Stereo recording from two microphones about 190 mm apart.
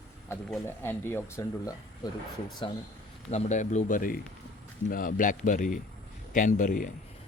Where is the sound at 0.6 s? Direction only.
10° left (ahead or behind).